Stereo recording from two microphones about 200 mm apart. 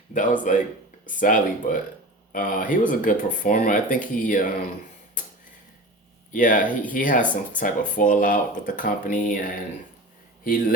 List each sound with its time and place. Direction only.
0.1 s speech: 40° left (ahead or behind)
6.3 s speech: 40° left (ahead or behind)